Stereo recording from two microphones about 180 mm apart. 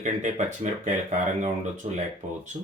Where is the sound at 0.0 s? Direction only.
45° right (ahead or behind).